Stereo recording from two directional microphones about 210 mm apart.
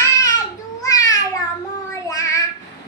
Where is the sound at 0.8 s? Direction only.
15° left (ahead or behind).